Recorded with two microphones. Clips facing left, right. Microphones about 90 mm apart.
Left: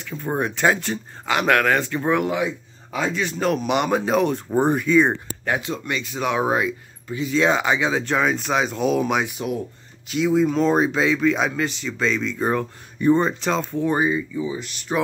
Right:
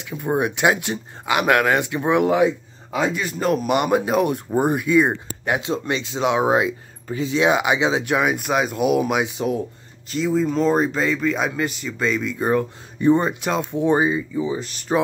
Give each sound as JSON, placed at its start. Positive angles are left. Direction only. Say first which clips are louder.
{"t": 0.0, "sound": "a man's voice", "louder": "right 3 dB", "side_deg": -15}
{"t": 3.2, "sound": "speech", "louder": "right 1 dB", "side_deg": 0}
{"t": 5.7, "sound": "speech", "louder": "right 3 dB", "side_deg": -30}
{"t": 9.2, "sound": "speech", "louder": "right 3 dB", "side_deg": -25}
{"t": 10.0, "sound": "speech", "louder": "left 2 dB", "side_deg": 0}